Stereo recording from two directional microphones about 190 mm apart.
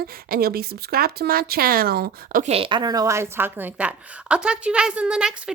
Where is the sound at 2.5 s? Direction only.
25° right (ahead or behind).